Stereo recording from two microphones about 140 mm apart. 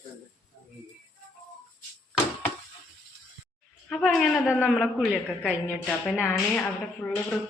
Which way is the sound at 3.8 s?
5° left (ahead or behind).